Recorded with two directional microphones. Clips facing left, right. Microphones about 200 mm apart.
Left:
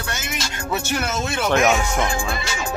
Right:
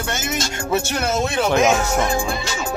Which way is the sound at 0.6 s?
30° right (ahead or behind).